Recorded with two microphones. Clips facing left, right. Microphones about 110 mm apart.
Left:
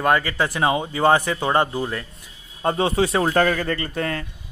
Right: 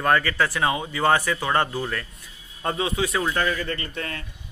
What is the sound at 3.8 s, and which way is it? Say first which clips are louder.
Speech: left 7 dB; 40° left (ahead or behind).